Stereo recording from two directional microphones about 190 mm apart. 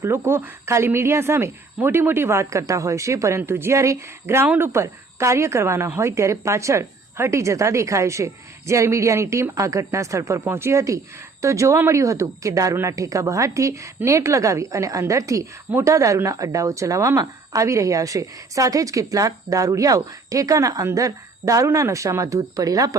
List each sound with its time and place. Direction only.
0.0 s speech: 15° right (ahead or behind)